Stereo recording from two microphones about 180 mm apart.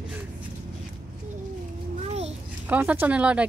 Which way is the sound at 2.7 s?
10° right (ahead or behind).